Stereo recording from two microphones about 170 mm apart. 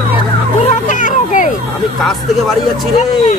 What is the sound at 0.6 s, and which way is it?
Speech, 50° left (ahead or behind).